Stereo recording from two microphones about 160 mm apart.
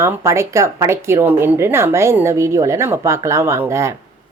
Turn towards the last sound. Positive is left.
turn(degrees=-15)  # may be behind; listen again after turning